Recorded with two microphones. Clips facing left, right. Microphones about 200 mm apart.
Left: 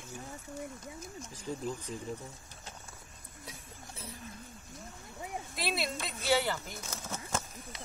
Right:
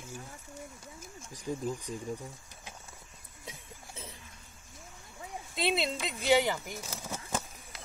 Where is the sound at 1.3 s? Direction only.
15° right (ahead or behind).